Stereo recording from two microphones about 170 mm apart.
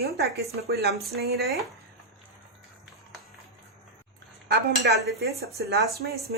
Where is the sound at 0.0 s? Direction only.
70° right (ahead or behind).